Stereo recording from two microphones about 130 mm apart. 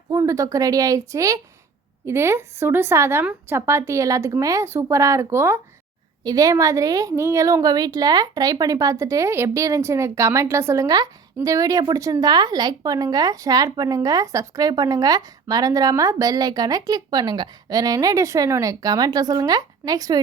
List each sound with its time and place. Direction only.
0.1 s a woman's voice: 25° right (ahead or behind)